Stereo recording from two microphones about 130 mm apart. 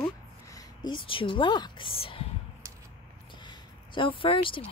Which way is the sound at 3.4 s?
40° left (ahead or behind).